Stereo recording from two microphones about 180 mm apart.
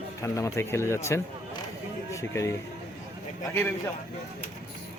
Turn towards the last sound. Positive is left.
turn(degrees=15)  # may be behind; listen again after turning